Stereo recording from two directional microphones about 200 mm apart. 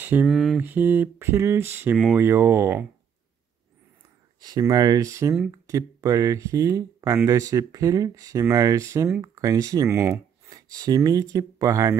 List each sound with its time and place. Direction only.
0.0 s speech: 10° right (ahead or behind)
4.4 s speech: 20° right (ahead or behind)